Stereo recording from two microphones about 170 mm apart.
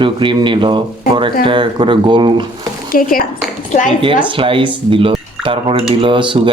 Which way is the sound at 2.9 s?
55° left (ahead or behind).